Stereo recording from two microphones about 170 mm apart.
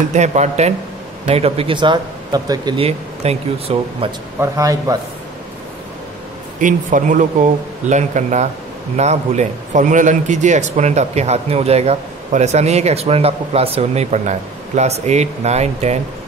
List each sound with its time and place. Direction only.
0.1 s speech: 40° right (ahead or behind)
4.4 s a man's voice: 20° right (ahead or behind)
6.6 s speech: 50° right (ahead or behind)